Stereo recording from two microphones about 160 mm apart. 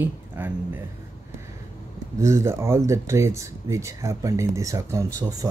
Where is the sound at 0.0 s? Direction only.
10° right (ahead or behind).